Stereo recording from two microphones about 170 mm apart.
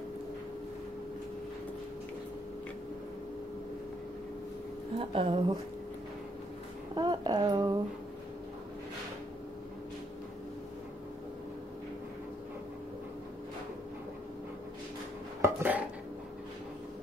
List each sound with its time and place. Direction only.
4.9 s a woman's voice: 30° right (ahead or behind)
7.0 s a sound: 25° right (ahead or behind)
15.4 s dishes: 10° right (ahead or behind)